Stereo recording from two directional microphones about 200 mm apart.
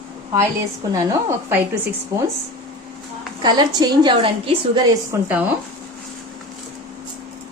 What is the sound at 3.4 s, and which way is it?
A woman's voice, 20° right (ahead or behind).